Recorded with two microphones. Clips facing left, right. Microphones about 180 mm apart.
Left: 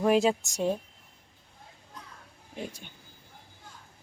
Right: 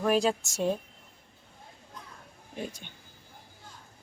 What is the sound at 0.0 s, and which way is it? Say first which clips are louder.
Speech: left 2 dB; 20° left (ahead or behind).